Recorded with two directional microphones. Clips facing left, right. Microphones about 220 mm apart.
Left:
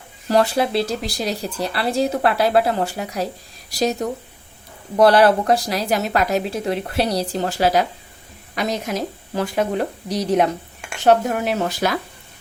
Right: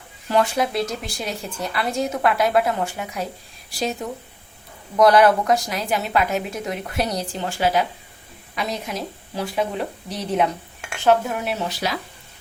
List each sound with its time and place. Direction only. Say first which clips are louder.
0.3 s a woman's voice: left 3 dB; 35° left (ahead or behind)